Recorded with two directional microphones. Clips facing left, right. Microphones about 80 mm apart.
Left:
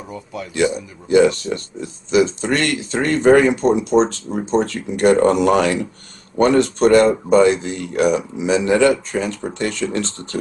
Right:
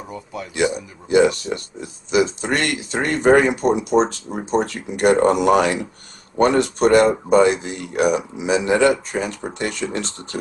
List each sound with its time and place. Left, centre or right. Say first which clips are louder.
0.3 s speech: left 2 dB; right